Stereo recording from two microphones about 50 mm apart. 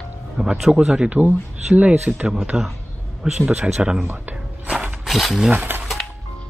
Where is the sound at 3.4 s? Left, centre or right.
Right.